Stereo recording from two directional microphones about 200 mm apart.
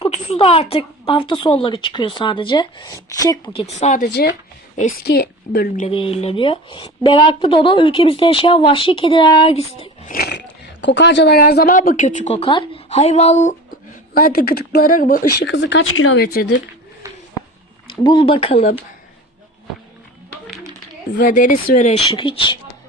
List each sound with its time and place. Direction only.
0.0 s speech: 30° left (ahead or behind)
4.0 s speech: 50° left (ahead or behind)
5.5 s speech: 40° left (ahead or behind)
5.9 s speech: 25° left (ahead or behind)
10.1 s speech: 50° left (ahead or behind); by 13.6 s 35° left (ahead or behind)
14.1 s speech: 50° left (ahead or behind)
15.4 s speech: 65° left (ahead or behind); by 16.2 s 85° left
16.2 s speech: 50° left (ahead or behind)
17.8 s speech: 25° left (ahead or behind)
21.1 s speech: 45° left (ahead or behind); by 22.5 s 25° left (ahead or behind)